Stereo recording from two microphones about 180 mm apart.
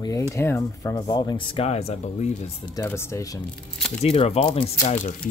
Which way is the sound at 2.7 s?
15° left (ahead or behind).